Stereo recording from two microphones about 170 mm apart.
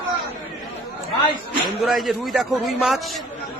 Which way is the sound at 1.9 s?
Centre (ahead or behind).